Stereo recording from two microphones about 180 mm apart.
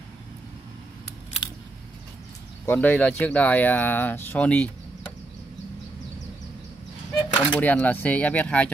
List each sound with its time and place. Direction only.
1.4 s scissors: 25° left (ahead or behind)
2.6 s speech: 10° left (ahead or behind)
7.3 s speech: 5° left (ahead or behind)